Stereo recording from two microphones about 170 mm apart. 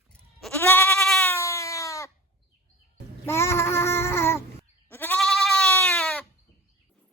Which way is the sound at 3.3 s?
15° left (ahead or behind).